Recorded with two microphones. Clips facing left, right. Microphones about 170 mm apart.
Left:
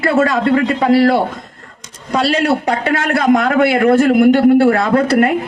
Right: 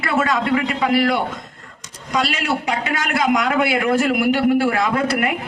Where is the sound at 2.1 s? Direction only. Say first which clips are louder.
Left 7 dB; 60° left (ahead or behind).